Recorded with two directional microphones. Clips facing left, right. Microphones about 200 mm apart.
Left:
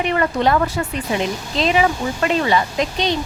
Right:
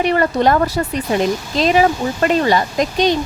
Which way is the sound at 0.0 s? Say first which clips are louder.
Right 3 dB; 40° right (ahead or behind).